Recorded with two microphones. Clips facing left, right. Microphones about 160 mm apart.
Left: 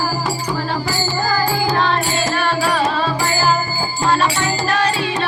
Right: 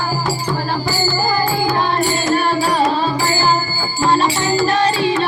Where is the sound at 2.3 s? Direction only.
40° right (ahead or behind).